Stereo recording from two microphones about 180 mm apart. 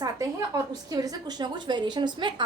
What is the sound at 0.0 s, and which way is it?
A woman's voice, 20° right (ahead or behind).